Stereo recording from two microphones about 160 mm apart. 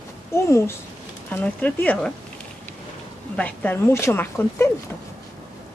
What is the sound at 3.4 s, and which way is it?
Speech, 10° left (ahead or behind).